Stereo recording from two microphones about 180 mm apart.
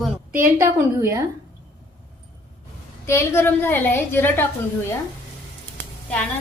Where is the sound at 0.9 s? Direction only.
20° right (ahead or behind).